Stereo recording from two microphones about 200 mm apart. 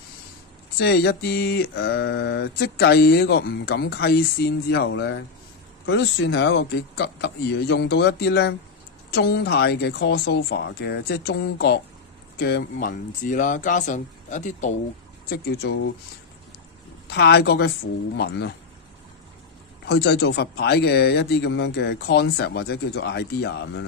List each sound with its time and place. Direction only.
0.7 s mantra: 55° left (ahead or behind)
5.9 s speech: 60° left (ahead or behind)
9.1 s mantra: 55° left (ahead or behind)
12.4 s speech: 50° left (ahead or behind)
15.2 s mantra: 50° left (ahead or behind)
17.1 s speech: 55° left (ahead or behind)
19.9 s speech: 55° left (ahead or behind)